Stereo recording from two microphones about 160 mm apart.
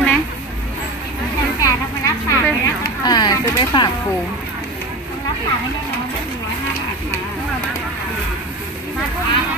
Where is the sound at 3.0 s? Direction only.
25° left (ahead or behind).